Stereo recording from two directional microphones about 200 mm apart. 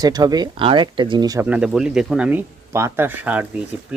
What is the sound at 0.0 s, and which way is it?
Speech, 20° right (ahead or behind).